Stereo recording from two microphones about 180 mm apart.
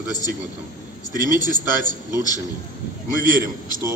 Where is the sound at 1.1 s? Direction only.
20° left (ahead or behind).